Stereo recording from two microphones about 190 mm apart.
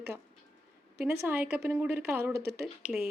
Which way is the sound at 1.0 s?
10° right (ahead or behind).